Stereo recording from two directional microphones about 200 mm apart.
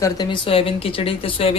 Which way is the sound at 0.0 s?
20° left (ahead or behind).